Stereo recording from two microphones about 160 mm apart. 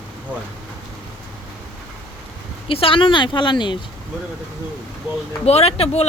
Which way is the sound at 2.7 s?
35° left (ahead or behind).